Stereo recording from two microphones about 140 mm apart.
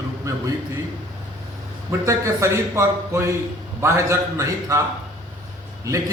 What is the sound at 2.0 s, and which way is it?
A man's voice, 20° right (ahead or behind).